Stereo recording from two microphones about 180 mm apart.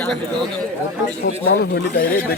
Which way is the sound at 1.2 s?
65° left (ahead or behind).